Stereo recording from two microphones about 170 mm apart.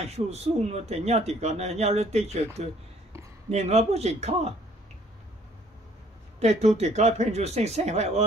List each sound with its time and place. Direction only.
0.0 s speech: 40° right (ahead or behind)
6.4 s speech: 40° right (ahead or behind)